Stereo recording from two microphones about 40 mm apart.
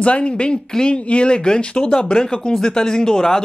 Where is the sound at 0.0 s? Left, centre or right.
Left.